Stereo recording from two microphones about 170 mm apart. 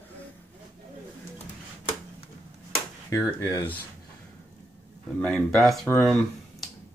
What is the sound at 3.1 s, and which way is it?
Speech, 15° left (ahead or behind).